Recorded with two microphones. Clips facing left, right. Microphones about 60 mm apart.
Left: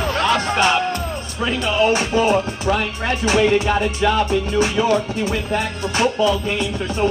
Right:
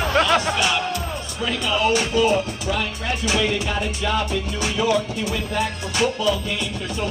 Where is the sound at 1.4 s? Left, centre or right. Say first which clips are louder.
Left 4 dB; left.